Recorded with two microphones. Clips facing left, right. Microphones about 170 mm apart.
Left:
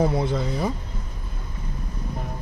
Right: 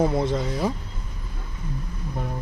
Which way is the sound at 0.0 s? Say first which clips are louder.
Even; centre (ahead or behind).